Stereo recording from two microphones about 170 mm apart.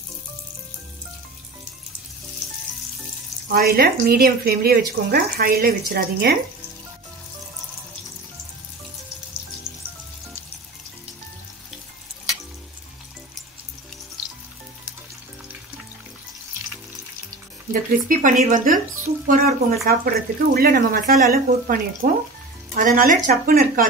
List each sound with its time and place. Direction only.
3.5 s speech: 60° right (ahead or behind)
18.0 s speech: 50° right (ahead or behind)